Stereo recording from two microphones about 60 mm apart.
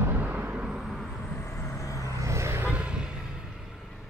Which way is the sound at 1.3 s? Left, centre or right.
Left.